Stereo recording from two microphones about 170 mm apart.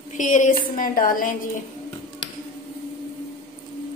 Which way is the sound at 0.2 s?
45° left (ahead or behind).